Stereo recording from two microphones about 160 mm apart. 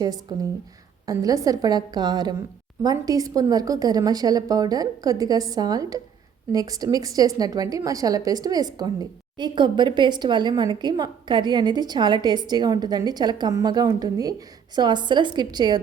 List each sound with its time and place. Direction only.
0.0 s a woman's voice: 25° right (ahead or behind)